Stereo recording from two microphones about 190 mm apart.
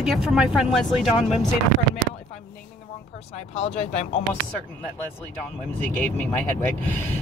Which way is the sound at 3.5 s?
35° left (ahead or behind).